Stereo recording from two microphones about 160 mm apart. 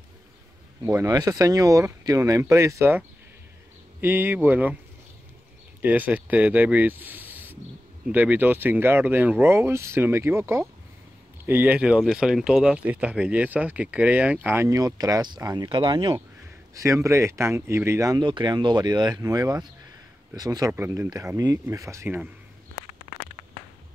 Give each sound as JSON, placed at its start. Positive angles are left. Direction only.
{"t": 0.9, "sound": "speech", "side_deg": -25}
{"t": 5.8, "sound": "speech", "side_deg": -10}
{"t": 16.7, "sound": "speech", "side_deg": -20}
{"t": 20.7, "sound": "speech", "side_deg": -15}